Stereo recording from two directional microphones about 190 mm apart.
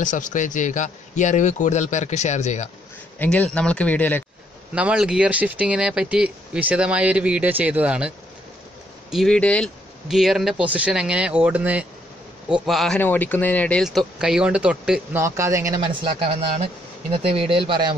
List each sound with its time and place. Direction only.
0.0 s speech: 40° left (ahead or behind)
3.2 s speech: 5° left (ahead or behind)
4.7 s speech: 5° right (ahead or behind)
9.1 s speech: centre (ahead or behind); by 17.9 s 25° right (ahead or behind)